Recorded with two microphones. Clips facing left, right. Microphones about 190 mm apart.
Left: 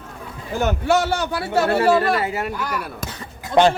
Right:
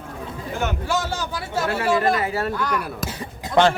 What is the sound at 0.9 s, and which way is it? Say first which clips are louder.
Speech: left 6 dB; 70° left (ahead or behind).